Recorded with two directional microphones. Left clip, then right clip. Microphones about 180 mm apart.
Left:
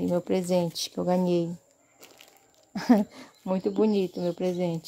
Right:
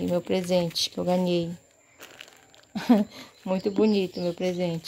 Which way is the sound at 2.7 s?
20° left (ahead or behind).